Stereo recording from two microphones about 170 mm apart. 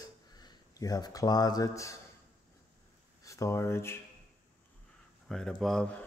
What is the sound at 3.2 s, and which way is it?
Speech, 20° left (ahead or behind).